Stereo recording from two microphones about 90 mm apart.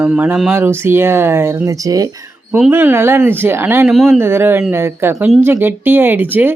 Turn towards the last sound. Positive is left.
turn(degrees=-20)  # may be behind; listen again after turning